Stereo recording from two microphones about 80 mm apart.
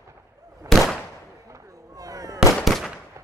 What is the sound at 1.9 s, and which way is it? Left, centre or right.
Fireworks, right.